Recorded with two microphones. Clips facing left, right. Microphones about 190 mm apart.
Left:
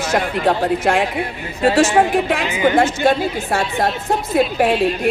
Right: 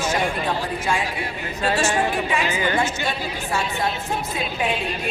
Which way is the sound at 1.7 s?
90° left.